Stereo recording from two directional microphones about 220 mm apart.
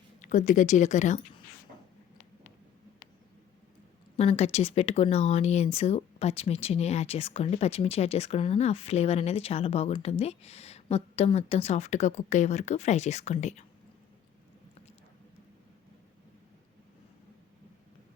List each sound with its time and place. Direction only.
0.2 s speech: 35° left (ahead or behind)
4.2 s speech: 30° left (ahead or behind)